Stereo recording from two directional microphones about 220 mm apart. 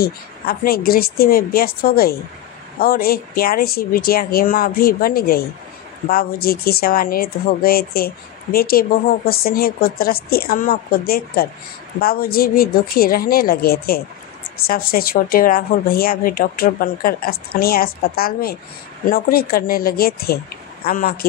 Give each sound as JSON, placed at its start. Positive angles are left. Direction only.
{"t": 0.0, "sound": "speech", "side_deg": 45}